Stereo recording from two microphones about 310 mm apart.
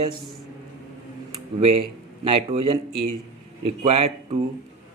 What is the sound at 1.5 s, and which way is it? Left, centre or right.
A man's voice, centre.